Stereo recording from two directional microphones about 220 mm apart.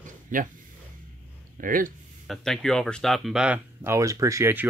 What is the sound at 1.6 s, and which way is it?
Speech, 40° right (ahead or behind).